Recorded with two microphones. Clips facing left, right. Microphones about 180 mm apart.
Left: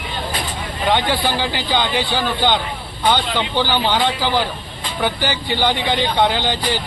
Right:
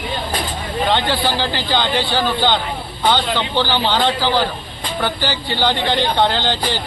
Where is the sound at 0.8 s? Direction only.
15° left (ahead or behind).